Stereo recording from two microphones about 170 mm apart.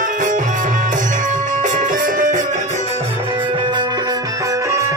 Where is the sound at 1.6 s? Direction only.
50° right (ahead or behind).